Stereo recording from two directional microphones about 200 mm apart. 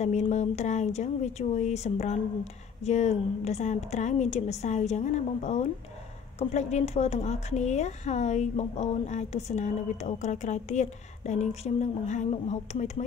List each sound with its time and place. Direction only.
0.0 s speech: 35° left (ahead or behind)